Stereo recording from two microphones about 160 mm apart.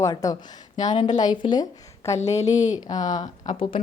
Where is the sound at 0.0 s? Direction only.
20° left (ahead or behind).